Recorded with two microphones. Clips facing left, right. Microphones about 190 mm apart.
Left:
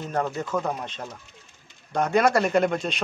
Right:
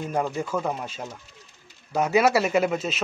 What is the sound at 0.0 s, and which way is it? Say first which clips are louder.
Speech: right 1 dB; 10° right (ahead or behind).